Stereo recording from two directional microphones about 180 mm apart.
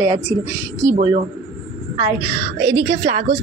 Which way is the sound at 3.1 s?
45° right (ahead or behind).